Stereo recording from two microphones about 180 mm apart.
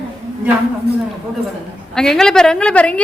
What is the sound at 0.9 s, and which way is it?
Speech, 65° right (ahead or behind).